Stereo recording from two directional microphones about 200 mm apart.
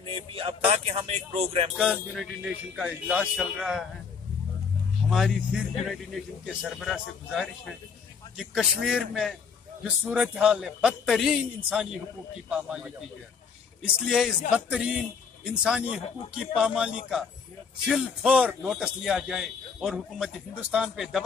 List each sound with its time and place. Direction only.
0.1 s speech: 25° right (ahead or behind)
1.8 s a man's voice: centre (ahead or behind)
5.1 s a man's voice: centre (ahead or behind)
13.9 s a man's voice: centre (ahead or behind)